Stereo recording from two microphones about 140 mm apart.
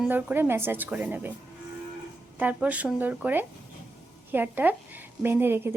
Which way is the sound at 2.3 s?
10° right (ahead or behind).